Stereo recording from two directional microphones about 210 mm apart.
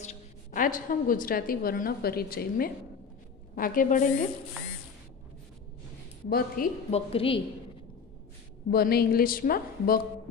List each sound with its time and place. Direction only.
0.0 s a woman's voice: 40° left (ahead or behind)
6.2 s speech: 45° left (ahead or behind)
6.9 s a woman's voice: 25° left (ahead or behind)
8.6 s speech: 50° left (ahead or behind)